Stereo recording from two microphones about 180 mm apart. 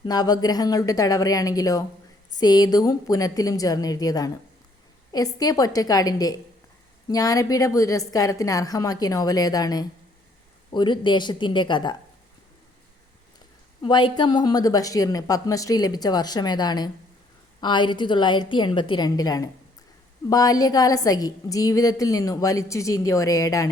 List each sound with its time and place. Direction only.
0.0 s a woman's voice: 20° left (ahead or behind)
13.8 s a woman's voice: 25° left (ahead or behind)